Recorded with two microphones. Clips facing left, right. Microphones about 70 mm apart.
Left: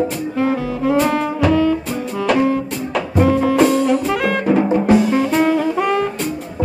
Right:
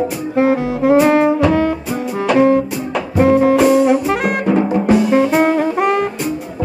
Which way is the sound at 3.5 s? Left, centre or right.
Centre.